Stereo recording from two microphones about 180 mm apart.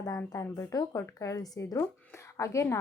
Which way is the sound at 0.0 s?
20° left (ahead or behind).